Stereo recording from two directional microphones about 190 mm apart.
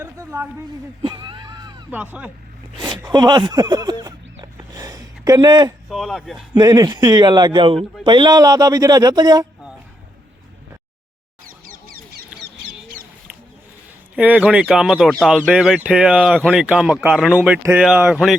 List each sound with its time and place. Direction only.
0.0 s a sound: 15° right (ahead or behind)
1.0 s wheeze: 25° right (ahead or behind)
1.9 s speech: 10° right (ahead or behind)
2.7 s speech: 25° right (ahead or behind)
4.5 s a sound: 20° right (ahead or behind)
5.9 s speech: centre (ahead or behind)
6.5 s speech: 20° right (ahead or behind)
11.4 s a sound: 50° right (ahead or behind)
14.2 s speech: 5° right (ahead or behind)